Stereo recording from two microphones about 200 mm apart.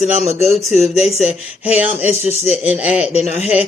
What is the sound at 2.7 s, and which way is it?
Speech, 5° right (ahead or behind).